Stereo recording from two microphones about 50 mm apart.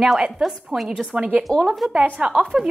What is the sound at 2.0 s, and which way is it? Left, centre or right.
Speech, right.